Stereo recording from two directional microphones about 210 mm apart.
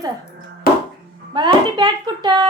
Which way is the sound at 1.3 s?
20° right (ahead or behind).